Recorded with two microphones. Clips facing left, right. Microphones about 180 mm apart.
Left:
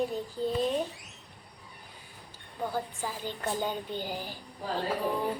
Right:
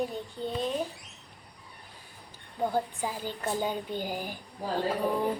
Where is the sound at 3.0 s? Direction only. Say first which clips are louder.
Right 1 dB; 10° right (ahead or behind).